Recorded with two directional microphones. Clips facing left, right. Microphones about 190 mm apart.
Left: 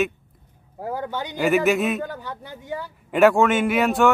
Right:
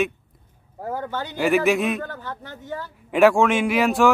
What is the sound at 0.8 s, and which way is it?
Speech, 15° left (ahead or behind).